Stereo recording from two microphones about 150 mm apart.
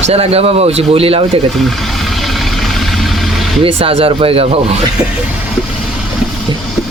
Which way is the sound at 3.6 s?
40° right (ahead or behind).